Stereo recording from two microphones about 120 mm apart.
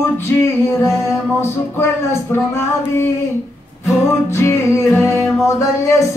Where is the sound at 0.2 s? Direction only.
25° left (ahead or behind).